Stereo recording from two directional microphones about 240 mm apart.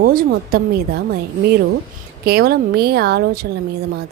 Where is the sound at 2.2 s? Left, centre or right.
Right.